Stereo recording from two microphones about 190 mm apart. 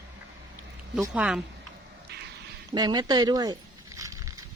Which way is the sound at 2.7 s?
20° right (ahead or behind).